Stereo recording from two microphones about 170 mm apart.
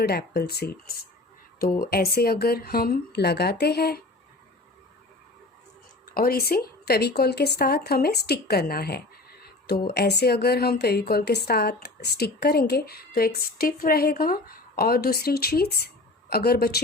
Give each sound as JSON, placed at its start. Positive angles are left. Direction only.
{"t": 0.0, "sound": "a woman's voice", "side_deg": 70}
{"t": 6.1, "sound": "a woman's voice", "side_deg": 60}